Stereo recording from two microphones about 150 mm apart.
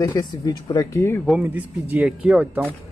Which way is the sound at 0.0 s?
25° left (ahead or behind).